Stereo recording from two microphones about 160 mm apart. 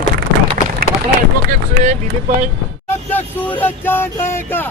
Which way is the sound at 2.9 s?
10° left (ahead or behind).